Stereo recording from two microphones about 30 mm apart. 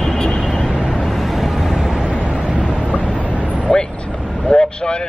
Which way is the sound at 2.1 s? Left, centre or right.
Left.